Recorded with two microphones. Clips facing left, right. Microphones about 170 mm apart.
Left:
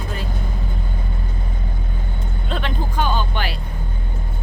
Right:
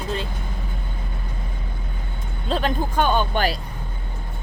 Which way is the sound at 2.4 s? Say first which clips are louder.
Right 4 dB; 35° right (ahead or behind).